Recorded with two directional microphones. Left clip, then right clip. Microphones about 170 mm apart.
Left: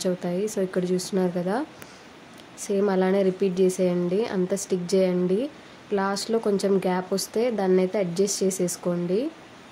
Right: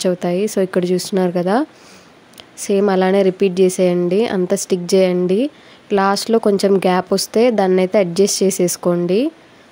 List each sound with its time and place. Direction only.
0.0 s speech: 55° right (ahead or behind)